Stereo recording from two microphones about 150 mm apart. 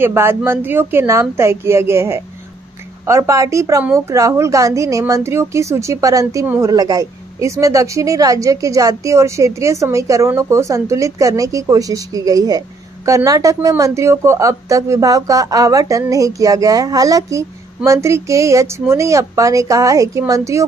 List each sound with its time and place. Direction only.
0.0 s a woman's voice: 15° right (ahead or behind)